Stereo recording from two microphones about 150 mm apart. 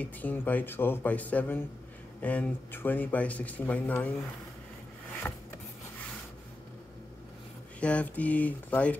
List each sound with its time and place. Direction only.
0.0 s speech: 10° left (ahead or behind)
5.2 s speech: 15° left (ahead or behind)
7.8 s speech: 10° left (ahead or behind)